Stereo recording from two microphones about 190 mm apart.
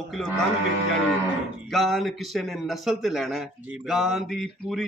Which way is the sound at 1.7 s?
Centre (ahead or behind).